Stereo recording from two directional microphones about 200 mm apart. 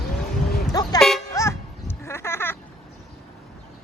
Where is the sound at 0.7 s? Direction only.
20° left (ahead or behind).